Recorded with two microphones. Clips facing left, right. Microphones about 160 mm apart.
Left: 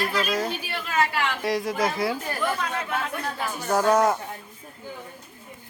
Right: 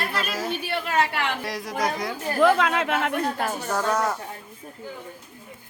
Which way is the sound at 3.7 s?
15° left (ahead or behind).